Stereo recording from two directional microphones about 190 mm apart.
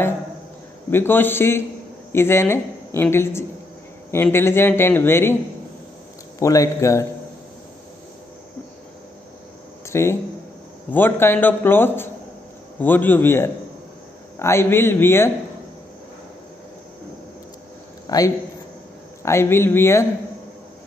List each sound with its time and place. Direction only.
0.8 s speech: 10° left (ahead or behind)
6.4 s speech: 15° left (ahead or behind)
9.8 s speech: 15° left (ahead or behind)
18.0 s a man's voice: 20° left (ahead or behind)